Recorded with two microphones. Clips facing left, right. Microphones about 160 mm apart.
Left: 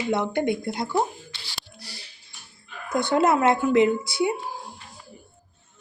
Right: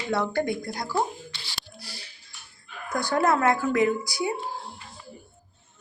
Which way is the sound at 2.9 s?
20° left (ahead or behind).